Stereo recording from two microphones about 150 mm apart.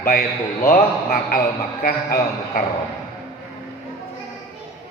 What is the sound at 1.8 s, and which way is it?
Speech, 90° left.